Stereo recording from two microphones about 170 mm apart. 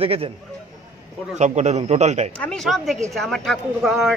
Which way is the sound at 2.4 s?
5° left (ahead or behind).